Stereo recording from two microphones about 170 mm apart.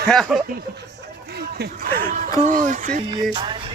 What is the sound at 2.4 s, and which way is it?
Speech, 50° right (ahead or behind).